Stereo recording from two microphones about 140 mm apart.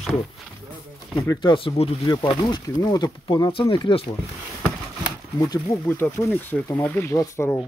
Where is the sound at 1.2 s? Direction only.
30° left (ahead or behind); by 2.0 s 45° left (ahead or behind).